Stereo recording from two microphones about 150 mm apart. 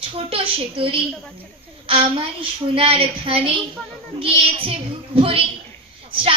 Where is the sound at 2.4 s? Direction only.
35° right (ahead or behind).